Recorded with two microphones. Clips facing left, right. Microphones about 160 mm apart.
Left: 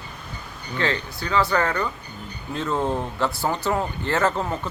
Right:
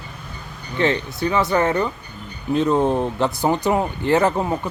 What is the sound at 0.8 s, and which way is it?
Speech, 20° right (ahead or behind).